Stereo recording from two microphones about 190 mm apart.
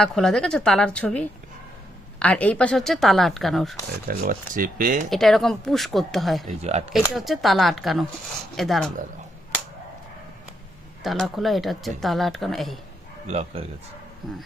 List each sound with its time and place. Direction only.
0.0 s speech: centre (ahead or behind)
4.1 s speech: 45° right (ahead or behind)
5.1 s speech: centre (ahead or behind)
6.6 s speech: 35° right (ahead or behind)
7.1 s speech: centre (ahead or behind)
11.0 s speech: centre (ahead or behind)
13.2 s speech: 35° right (ahead or behind)